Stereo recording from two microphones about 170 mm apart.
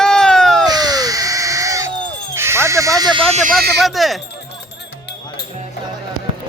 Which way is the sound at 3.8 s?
Centre (ahead or behind).